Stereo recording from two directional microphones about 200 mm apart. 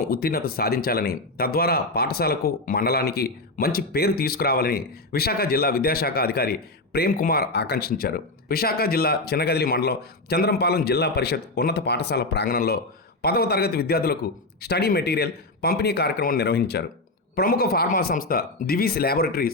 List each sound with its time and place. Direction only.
0.1 s speech: 50° left (ahead or behind)